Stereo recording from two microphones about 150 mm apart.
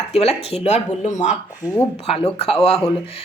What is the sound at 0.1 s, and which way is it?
Speech, 40° left (ahead or behind).